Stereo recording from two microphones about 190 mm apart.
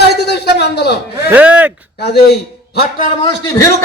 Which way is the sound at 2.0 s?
60° left (ahead or behind).